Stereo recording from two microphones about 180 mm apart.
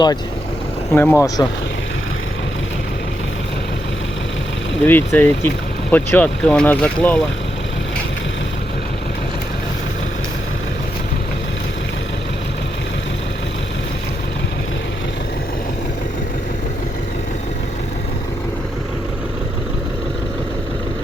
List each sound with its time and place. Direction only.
0.9 s speech: 15° left (ahead or behind)
4.9 s speech: 10° left (ahead or behind)